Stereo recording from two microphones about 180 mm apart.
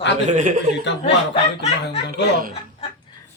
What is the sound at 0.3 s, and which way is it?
Speech, 45° right (ahead or behind).